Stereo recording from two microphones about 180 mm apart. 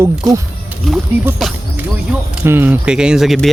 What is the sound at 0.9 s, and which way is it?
Speech, centre (ahead or behind).